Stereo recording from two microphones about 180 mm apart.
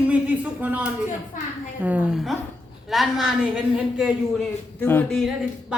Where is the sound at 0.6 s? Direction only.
10° right (ahead or behind).